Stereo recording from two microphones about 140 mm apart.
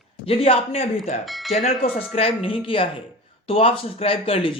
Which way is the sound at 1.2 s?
Centre (ahead or behind).